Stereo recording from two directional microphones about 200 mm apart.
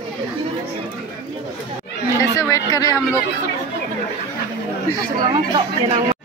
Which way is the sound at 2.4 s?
15° left (ahead or behind).